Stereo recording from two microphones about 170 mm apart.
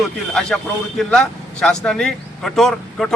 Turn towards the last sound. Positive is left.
turn(degrees=0)  # may be behind; listen again after turning